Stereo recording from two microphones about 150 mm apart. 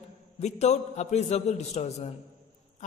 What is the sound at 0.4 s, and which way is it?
A man's voice, 50° left (ahead or behind).